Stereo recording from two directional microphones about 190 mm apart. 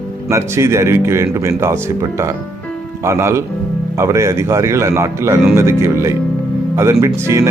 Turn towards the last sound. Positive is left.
turn(degrees=-15)  # may be behind; listen again after turning